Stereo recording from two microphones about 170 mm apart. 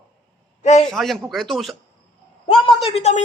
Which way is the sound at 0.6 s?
40° left (ahead or behind).